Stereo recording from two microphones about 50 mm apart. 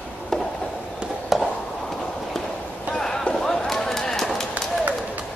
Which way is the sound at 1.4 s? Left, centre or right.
Centre.